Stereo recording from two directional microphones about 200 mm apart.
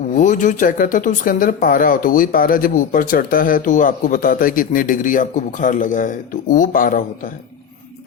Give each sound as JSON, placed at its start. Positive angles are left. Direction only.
{"t": 0.1, "sound": "speech", "side_deg": 40}